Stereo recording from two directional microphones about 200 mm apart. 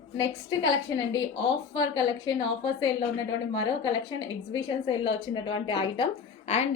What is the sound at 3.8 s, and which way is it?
A woman's voice, 20° left (ahead or behind).